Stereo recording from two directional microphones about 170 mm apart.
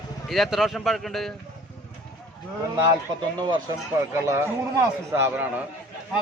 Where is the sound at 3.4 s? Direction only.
25° right (ahead or behind).